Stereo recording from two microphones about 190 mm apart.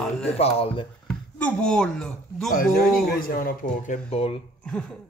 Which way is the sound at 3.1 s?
50° left (ahead or behind).